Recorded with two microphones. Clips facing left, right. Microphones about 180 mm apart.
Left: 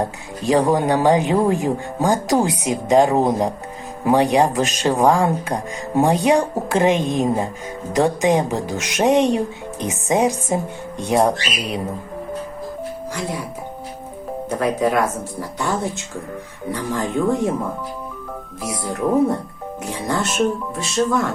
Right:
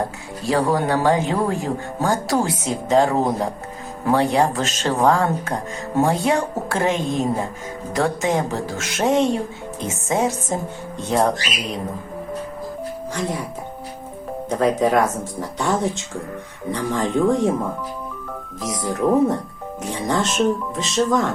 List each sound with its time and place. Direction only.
0.4 s speech: 20° left (ahead or behind)
13.1 s speech: 10° left (ahead or behind)
14.5 s speech: 10° left (ahead or behind)
16.7 s speech: 5° left (ahead or behind)
19.8 s speech: 10° left (ahead or behind)